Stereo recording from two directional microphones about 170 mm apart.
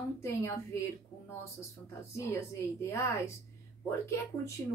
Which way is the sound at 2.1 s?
15° left (ahead or behind).